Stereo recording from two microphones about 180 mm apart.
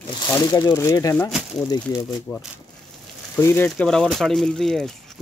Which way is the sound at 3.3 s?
10° left (ahead or behind).